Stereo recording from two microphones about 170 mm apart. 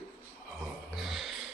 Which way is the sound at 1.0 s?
Centre (ahead or behind).